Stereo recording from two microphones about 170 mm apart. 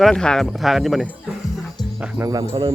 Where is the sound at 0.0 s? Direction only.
5° left (ahead or behind).